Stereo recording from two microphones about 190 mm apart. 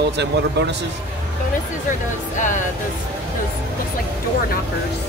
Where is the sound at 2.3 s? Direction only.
40° left (ahead or behind).